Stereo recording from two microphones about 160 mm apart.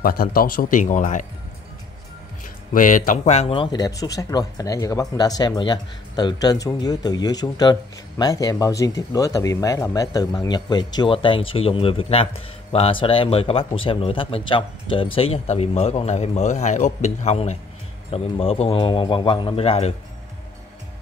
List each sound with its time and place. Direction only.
0.0 s a man's voice: 65° left (ahead or behind)
2.7 s speech: 55° left (ahead or behind); by 19.9 s 40° left (ahead or behind)